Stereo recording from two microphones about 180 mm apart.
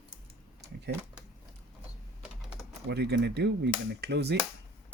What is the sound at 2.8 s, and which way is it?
Speech, 70° right (ahead or behind).